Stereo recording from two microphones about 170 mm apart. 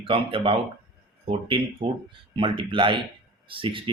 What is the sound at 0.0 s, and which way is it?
Speech, 30° right (ahead or behind).